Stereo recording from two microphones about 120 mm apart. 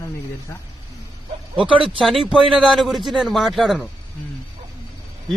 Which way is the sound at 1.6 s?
45° right (ahead or behind).